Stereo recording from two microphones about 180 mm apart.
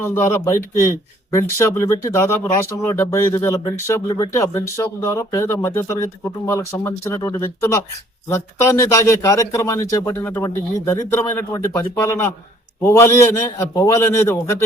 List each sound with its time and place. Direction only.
0.0 s speech: 10° left (ahead or behind)